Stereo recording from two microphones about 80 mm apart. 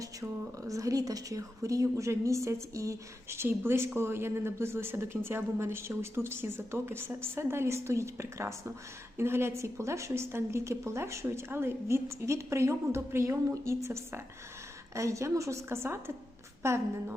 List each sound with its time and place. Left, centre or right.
0.0 s a woman's voice: right